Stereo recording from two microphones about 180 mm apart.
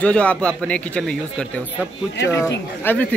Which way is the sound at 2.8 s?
10° left (ahead or behind).